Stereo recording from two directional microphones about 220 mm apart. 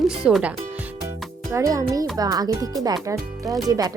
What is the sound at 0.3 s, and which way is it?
Speech, 5° right (ahead or behind).